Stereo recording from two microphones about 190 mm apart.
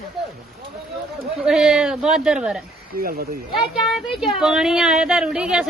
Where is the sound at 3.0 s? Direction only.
50° right (ahead or behind).